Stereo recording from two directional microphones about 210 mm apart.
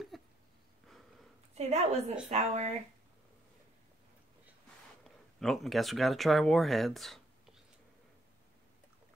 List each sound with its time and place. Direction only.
0.1 s a sound: centre (ahead or behind)
1.5 s a woman's voice: 30° right (ahead or behind)
5.0 s speech: centre (ahead or behind)